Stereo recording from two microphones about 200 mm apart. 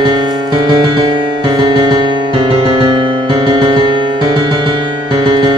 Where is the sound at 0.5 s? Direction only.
20° right (ahead or behind).